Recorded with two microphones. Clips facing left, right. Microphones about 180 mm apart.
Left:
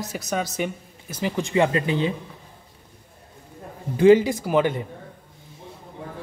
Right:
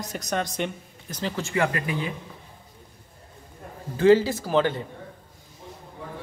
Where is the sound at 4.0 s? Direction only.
15° left (ahead or behind).